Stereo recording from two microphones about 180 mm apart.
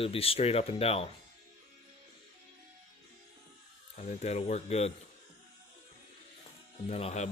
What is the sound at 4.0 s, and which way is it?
Speech, 40° left (ahead or behind).